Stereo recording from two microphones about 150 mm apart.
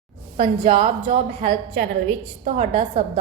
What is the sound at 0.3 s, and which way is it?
A woman's voice, 40° right (ahead or behind).